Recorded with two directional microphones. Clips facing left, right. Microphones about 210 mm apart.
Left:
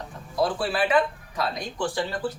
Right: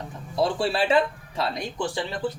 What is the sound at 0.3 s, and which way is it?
Speech, 25° right (ahead or behind).